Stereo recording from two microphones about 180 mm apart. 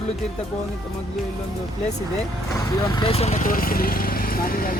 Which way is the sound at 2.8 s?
25° left (ahead or behind).